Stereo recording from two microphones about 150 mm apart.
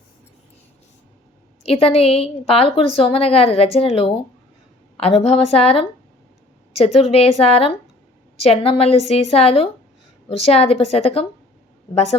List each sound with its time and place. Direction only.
1.6 s a woman's voice: 40° left (ahead or behind)